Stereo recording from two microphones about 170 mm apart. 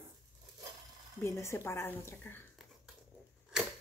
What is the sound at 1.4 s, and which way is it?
Speech, 15° left (ahead or behind).